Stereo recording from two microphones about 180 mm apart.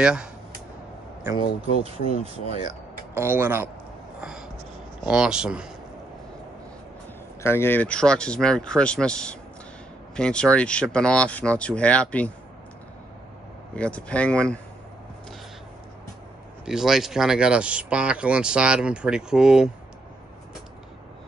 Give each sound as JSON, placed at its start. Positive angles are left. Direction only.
{"t": 0.0, "sound": "speech", "side_deg": -5}
{"t": 1.9, "sound": "speech", "side_deg": -35}
{"t": 3.2, "sound": "speech", "side_deg": -10}
{"t": 4.2, "sound": "a sound", "side_deg": -5}
{"t": 5.0, "sound": "speech", "side_deg": -5}
{"t": 7.4, "sound": "speech", "side_deg": 15}
{"t": 13.7, "sound": "speech", "side_deg": 5}
{"t": 16.6, "sound": "speech", "side_deg": 0}